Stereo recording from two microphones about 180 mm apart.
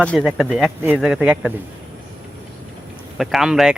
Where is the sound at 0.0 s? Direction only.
5° left (ahead or behind).